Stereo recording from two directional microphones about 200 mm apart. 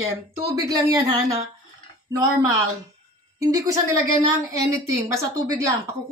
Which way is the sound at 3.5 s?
15° right (ahead or behind).